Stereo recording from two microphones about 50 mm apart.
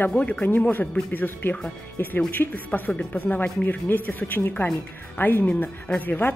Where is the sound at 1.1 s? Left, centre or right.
Left.